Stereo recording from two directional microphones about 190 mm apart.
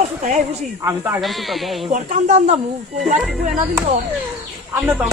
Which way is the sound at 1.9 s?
40° right (ahead or behind).